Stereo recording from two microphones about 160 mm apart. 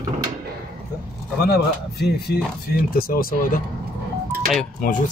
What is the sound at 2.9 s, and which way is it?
Speech, 65° left (ahead or behind).